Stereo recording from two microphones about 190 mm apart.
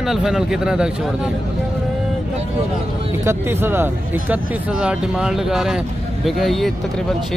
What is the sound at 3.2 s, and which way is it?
Speech, 10° right (ahead or behind).